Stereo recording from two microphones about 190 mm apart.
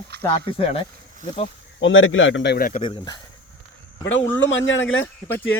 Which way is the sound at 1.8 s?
90° left.